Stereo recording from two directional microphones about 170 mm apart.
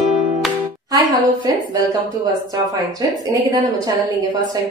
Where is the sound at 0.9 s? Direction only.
20° right (ahead or behind).